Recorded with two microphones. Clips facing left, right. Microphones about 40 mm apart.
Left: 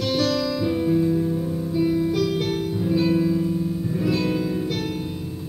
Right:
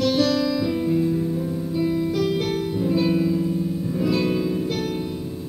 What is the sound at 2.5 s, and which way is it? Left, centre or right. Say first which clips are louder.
Music: right 1 dB; centre.